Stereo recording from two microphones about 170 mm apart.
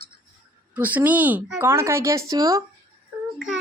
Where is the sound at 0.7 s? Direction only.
10° right (ahead or behind).